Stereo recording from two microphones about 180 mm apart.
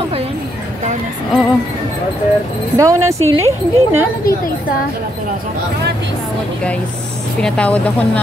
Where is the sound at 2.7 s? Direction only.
15° right (ahead or behind).